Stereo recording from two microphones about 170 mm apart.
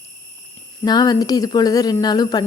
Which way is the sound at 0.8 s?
20° left (ahead or behind).